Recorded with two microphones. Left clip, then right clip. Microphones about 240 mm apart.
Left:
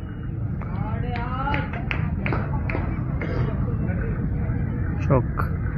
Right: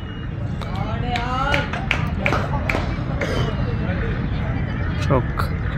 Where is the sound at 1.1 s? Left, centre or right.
Right.